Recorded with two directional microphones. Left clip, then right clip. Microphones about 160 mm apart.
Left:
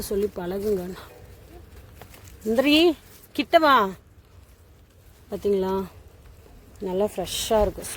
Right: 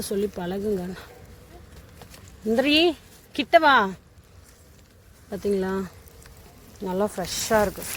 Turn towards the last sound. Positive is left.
turn(degrees=10)  # may be behind; listen again after turning